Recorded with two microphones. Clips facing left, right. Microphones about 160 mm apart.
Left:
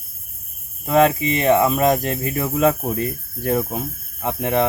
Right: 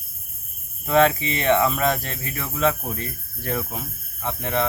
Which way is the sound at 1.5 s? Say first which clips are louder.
Left 4 dB; 10° left (ahead or behind).